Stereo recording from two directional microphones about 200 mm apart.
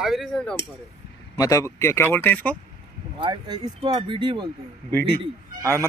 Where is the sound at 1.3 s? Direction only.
15° left (ahead or behind).